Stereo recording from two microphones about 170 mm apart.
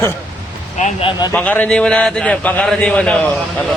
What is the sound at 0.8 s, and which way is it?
Speech, 45° left (ahead or behind).